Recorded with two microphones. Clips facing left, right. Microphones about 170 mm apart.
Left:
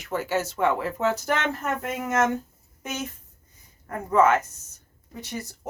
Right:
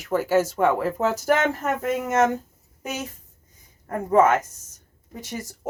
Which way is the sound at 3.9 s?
45° right (ahead or behind).